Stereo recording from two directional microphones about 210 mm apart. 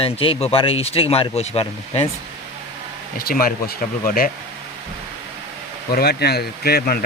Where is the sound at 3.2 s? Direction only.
45° left (ahead or behind).